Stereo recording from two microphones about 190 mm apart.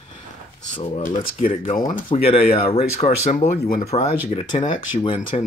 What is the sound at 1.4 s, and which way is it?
Speech, 45° left (ahead or behind).